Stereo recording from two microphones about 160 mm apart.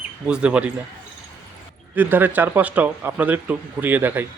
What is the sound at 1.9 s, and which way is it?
Speech, 10° right (ahead or behind).